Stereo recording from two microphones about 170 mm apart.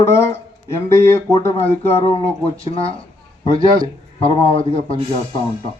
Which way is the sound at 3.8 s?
30° left (ahead or behind).